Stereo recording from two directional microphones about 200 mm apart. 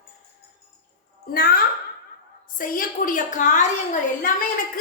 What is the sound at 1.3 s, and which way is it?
A woman's voice, 45° left (ahead or behind).